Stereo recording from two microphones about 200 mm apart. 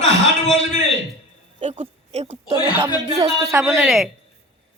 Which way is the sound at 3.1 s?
15° right (ahead or behind).